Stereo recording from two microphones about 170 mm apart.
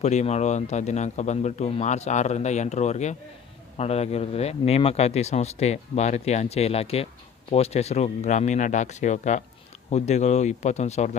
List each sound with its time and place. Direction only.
0.0 s a man's voice: 40° left (ahead or behind)